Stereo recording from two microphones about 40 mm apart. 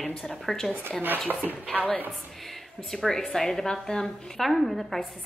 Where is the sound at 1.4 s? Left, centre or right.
Right.